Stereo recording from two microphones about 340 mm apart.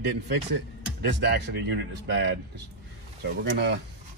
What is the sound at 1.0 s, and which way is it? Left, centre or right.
Speech, right.